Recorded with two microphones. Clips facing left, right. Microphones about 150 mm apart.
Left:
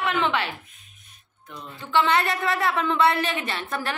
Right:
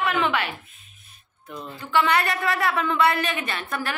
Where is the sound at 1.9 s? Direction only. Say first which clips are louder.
Even; 25° left (ahead or behind).